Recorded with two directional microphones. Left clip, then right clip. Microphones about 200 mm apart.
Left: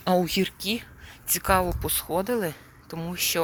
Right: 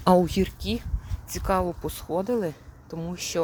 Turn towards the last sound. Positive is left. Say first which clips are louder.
# left 2 dB
turn(degrees=0)  # may be behind; listen again after turning